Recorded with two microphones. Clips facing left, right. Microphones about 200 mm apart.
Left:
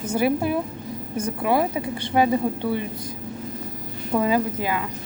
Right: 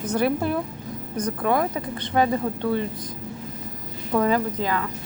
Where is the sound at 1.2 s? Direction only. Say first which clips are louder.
Left 1 dB; 10° left (ahead or behind).